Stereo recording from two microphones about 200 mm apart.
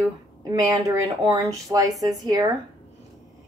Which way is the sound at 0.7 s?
15° right (ahead or behind).